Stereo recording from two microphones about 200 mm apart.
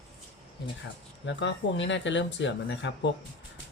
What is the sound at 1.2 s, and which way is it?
Speech, 65° left (ahead or behind).